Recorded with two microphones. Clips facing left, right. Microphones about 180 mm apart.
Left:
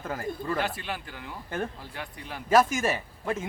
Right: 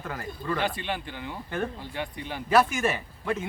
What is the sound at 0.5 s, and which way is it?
Speech, 5° left (ahead or behind).